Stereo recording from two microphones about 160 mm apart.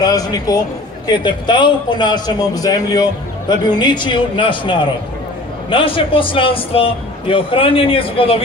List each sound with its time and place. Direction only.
0.0 s a man's voice: 25° left (ahead or behind)